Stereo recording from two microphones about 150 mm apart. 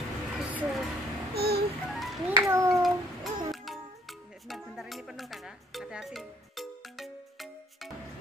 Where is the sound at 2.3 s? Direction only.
20° right (ahead or behind).